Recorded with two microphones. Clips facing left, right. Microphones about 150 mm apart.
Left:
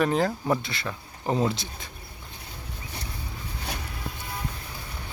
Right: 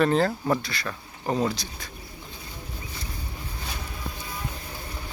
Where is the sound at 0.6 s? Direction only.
25° left (ahead or behind).